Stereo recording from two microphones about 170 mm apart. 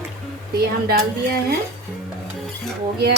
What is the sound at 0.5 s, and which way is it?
Speech, 65° right (ahead or behind).